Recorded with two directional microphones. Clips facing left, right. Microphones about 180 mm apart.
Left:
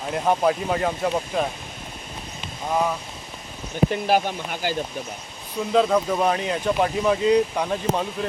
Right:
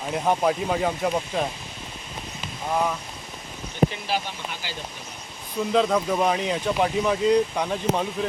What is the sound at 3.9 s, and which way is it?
Speech, 50° left (ahead or behind).